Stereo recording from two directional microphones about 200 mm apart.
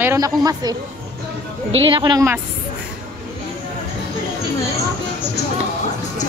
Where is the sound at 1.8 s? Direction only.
25° right (ahead or behind).